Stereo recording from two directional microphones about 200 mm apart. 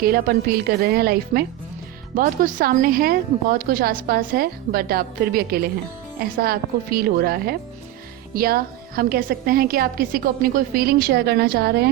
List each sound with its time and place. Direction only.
0.0 s a woman's voice: 50° right (ahead or behind)